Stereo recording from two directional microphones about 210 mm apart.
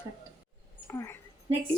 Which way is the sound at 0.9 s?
10° left (ahead or behind).